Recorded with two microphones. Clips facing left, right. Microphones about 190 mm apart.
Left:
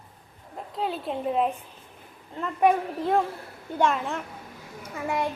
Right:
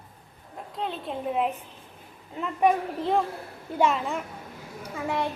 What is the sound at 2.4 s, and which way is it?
A child's voice, centre (ahead or behind).